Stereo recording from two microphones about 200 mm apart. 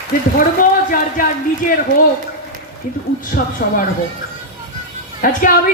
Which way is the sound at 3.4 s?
50° left (ahead or behind).